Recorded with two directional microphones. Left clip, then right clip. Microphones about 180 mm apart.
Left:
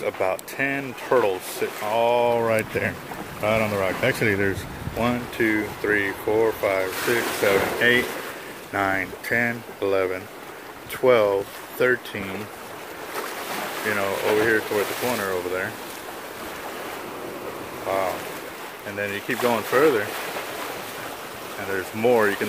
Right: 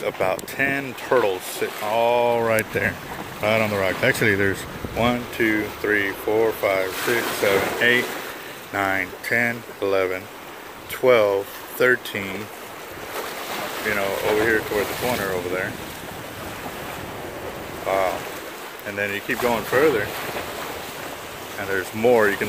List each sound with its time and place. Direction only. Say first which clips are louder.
0.0 s speech: right 1 dB; 5° right (ahead or behind)
8.7 s speech: right 1 dB; 10° left (ahead or behind)
11.8 s speech: right 3 dB; 5° right (ahead or behind)
13.8 s speech: right 1 dB; 5° left (ahead or behind)
17.9 s a sound: right 3 dB; 20° right (ahead or behind)
18.9 s speech: right 2 dB; 5° right (ahead or behind)
21.7 s speech: right 2 dB; 10° right (ahead or behind)